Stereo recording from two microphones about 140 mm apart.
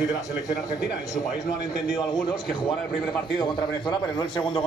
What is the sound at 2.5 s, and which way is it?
A man's voice, 30° left (ahead or behind).